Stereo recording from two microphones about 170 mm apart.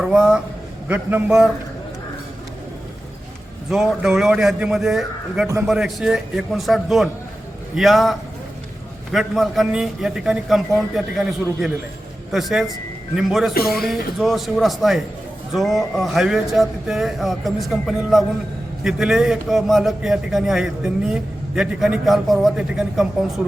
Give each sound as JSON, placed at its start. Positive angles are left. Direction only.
{"t": 0.0, "sound": "a man's voice", "side_deg": -5}
{"t": 3.7, "sound": "a man's voice", "side_deg": -5}
{"t": 9.1, "sound": "a man's voice", "side_deg": 0}
{"t": 13.5, "sound": "speech", "side_deg": 60}
{"t": 13.7, "sound": "a man's voice", "side_deg": 0}